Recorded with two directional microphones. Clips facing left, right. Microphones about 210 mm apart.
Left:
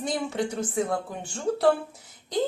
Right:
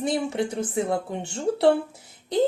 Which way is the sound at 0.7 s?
25° right (ahead or behind).